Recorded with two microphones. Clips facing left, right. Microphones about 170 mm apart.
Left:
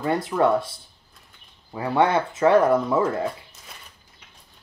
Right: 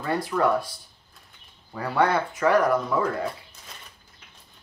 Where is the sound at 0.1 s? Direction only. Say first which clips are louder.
Left 2 dB; 20° left (ahead or behind).